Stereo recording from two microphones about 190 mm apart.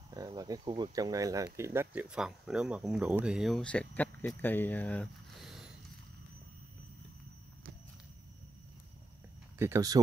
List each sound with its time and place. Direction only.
0.1 s cricket: 20° right (ahead or behind)
0.9 s speech: 20° right (ahead or behind); by 5.7 s centre (ahead or behind)
9.6 s speech: 15° right (ahead or behind)